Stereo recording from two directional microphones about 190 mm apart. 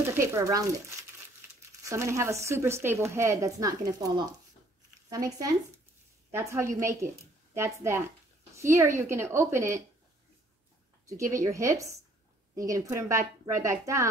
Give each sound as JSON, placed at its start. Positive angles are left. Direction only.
{"t": 0.2, "sound": "speech", "side_deg": -15}
{"t": 11.1, "sound": "speech", "side_deg": -15}